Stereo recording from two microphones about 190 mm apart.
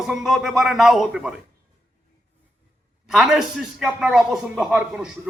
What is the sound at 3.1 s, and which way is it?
A man's voice, 5° right (ahead or behind).